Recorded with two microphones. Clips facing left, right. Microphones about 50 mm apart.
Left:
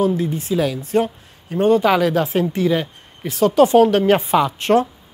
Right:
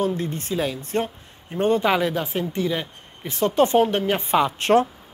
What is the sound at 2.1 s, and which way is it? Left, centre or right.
Speech, left.